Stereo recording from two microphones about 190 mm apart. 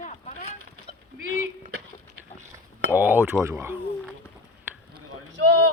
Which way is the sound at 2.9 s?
10° right (ahead or behind).